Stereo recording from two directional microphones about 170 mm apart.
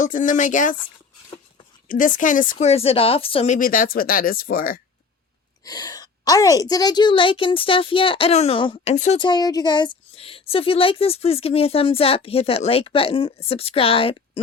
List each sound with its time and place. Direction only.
0.0 s speech: 50° left (ahead or behind)
1.9 s speech: 50° left (ahead or behind); by 3.5 s 35° left (ahead or behind)
3.5 s speech: 55° left (ahead or behind)
5.6 s speech: 20° left (ahead or behind); by 9.1 s 40° left (ahead or behind)
9.1 s speech: 25° left (ahead or behind)